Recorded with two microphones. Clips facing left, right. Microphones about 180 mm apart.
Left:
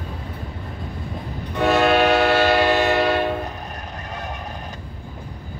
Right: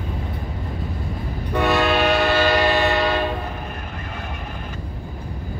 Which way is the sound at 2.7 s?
60° right (ahead or behind).